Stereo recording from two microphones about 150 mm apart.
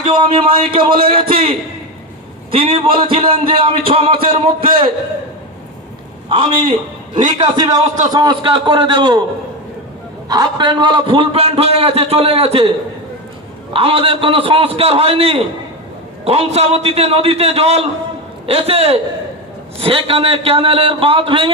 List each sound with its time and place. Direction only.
0.1 s a man's voice: 30° right (ahead or behind)
6.2 s a man's voice: 35° right (ahead or behind)
7.2 s a man's voice: 60° right (ahead or behind)
7.4 s a man's voice: 30° right (ahead or behind)
10.2 s a man's voice: 30° right (ahead or behind)
13.7 s a man's voice: 40° right (ahead or behind)